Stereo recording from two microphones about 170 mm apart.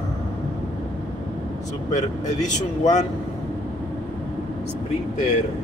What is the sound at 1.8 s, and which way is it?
Speech, 45° left (ahead or behind).